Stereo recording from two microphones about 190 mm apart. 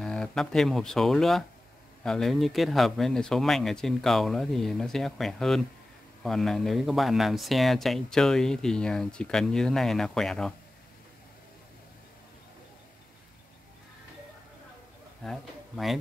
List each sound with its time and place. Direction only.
0.0 s speech: 5° left (ahead or behind)
15.2 s speech: centre (ahead or behind)